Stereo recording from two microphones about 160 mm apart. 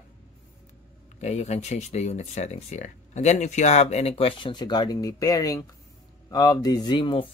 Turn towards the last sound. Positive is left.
turn(degrees=30)  # may be behind; listen again after turning